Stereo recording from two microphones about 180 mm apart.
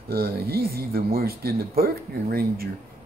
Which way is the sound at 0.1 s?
55° right (ahead or behind).